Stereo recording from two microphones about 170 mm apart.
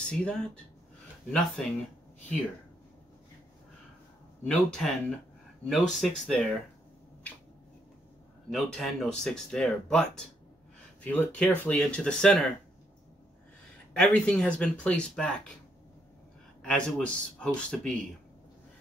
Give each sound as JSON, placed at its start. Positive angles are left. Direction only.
{"t": 0.0, "sound": "speech", "side_deg": 5}
{"t": 1.6, "sound": "speech", "side_deg": 0}
{"t": 4.5, "sound": "speech", "side_deg": 5}
{"t": 8.5, "sound": "speech", "side_deg": 0}
{"t": 13.9, "sound": "speech", "side_deg": 5}
{"t": 16.6, "sound": "speech", "side_deg": 5}